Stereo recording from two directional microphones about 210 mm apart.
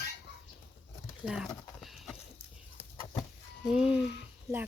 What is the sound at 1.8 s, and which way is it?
Horse, centre (ahead or behind).